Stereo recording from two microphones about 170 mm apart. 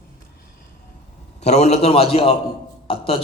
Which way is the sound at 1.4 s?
40° left (ahead or behind).